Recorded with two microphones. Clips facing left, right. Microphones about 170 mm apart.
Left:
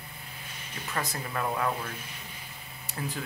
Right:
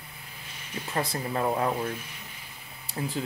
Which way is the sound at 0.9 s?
30° right (ahead or behind).